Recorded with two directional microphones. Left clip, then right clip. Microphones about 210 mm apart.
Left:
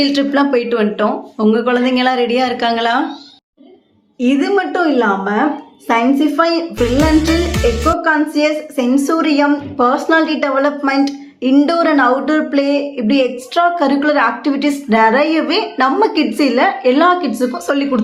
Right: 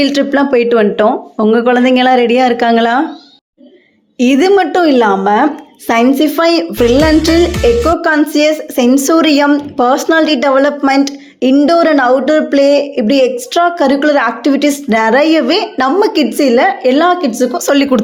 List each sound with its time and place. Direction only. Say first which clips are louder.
0.0 s a woman's voice: right 3 dB; 35° right (ahead or behind)
4.2 s a woman's voice: right 6 dB; 40° right (ahead or behind)
6.7 s music: right 3 dB; centre (ahead or behind)
8.0 s a woman's voice: right 4 dB; 40° right (ahead or behind)